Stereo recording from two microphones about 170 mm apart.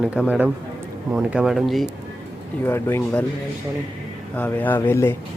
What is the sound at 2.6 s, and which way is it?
Speech, 15° left (ahead or behind).